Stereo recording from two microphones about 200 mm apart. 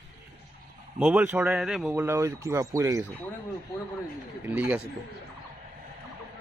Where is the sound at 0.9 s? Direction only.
5° right (ahead or behind).